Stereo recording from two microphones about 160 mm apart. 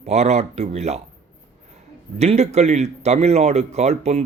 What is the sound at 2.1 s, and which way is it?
A man's voice, 45° right (ahead or behind).